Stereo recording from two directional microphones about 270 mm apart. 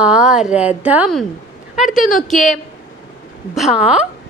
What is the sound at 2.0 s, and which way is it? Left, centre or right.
Speech, left.